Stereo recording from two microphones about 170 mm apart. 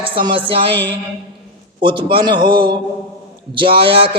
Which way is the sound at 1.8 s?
30° right (ahead or behind).